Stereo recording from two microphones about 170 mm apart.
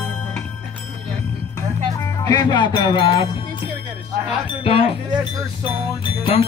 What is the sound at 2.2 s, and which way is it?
Music, 25° left (ahead or behind).